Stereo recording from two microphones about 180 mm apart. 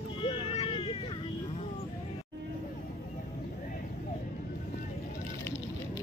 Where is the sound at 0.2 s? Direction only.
30° left (ahead or behind).